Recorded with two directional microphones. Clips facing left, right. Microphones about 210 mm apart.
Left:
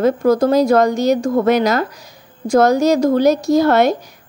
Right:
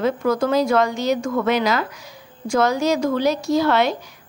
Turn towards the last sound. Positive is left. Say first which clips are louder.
# left 5 dB
turn(degrees=45)  # may be behind; listen again after turning